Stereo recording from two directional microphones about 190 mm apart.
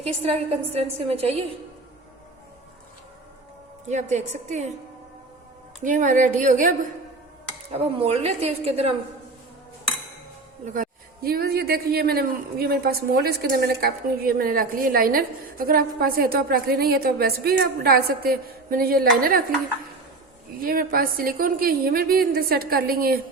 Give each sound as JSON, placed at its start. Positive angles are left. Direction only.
{"t": 0.0, "sound": "a woman's voice", "side_deg": -30}
{"t": 3.8, "sound": "a woman's voice", "side_deg": -40}
{"t": 5.8, "sound": "a man's voice", "side_deg": -45}
{"t": 10.8, "sound": "a man's voice", "side_deg": -55}
{"t": 20.6, "sound": "a man's voice", "side_deg": -50}